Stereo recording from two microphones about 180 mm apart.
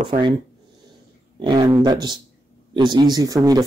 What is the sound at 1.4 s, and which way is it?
Speech, 25° right (ahead or behind).